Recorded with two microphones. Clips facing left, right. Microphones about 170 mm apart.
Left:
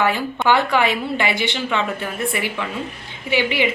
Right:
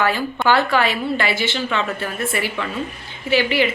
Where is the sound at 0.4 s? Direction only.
20° left (ahead or behind).